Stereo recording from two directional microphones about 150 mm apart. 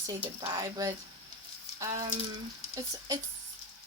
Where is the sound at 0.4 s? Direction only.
25° right (ahead or behind).